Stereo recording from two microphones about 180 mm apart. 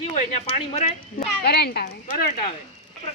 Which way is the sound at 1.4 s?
65° left (ahead or behind).